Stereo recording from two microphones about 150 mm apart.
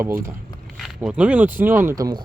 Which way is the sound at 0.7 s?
Centre (ahead or behind).